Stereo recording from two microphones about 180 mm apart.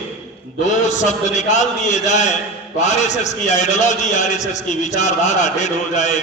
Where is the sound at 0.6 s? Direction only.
40° left (ahead or behind).